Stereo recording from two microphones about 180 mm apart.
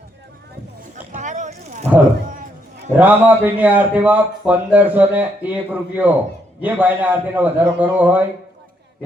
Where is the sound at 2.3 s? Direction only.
50° right (ahead or behind).